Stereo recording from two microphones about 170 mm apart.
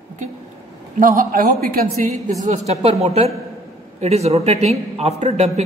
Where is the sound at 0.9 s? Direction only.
55° right (ahead or behind).